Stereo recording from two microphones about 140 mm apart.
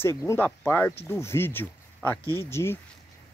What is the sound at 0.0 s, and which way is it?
Speech, 20° left (ahead or behind).